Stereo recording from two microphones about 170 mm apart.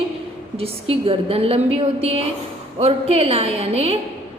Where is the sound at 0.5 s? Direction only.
35° right (ahead or behind).